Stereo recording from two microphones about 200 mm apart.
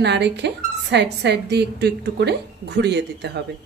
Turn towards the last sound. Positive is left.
turn(degrees=-60)  # may be behind; listen again after turning